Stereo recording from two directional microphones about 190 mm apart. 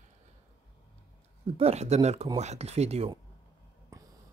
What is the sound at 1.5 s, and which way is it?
Speech, 35° right (ahead or behind).